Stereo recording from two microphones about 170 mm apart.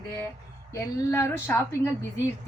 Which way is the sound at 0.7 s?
15° left (ahead or behind).